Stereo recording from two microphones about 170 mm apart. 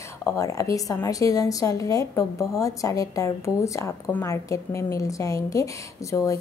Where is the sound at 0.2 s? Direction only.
20° left (ahead or behind).